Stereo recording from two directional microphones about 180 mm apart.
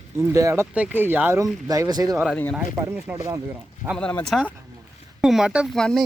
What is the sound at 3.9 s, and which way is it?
Speech, 5° left (ahead or behind).